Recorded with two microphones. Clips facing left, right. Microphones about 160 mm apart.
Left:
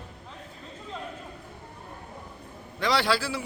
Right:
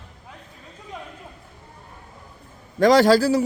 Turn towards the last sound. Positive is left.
turn(degrees=-40)  # may be behind; listen again after turning